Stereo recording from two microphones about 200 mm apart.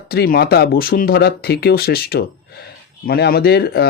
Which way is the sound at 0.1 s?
50° left (ahead or behind).